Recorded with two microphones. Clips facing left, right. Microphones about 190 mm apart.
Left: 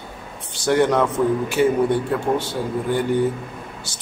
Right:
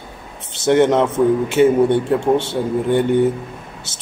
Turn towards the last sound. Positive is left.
turn(degrees=-20)  # may be behind; listen again after turning